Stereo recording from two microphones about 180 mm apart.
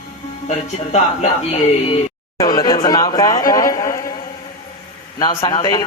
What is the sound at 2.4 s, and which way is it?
Speech, 20° left (ahead or behind).